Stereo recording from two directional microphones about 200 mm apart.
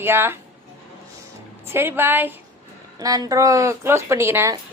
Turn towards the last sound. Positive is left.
turn(degrees=-15)  # may be behind; listen again after turning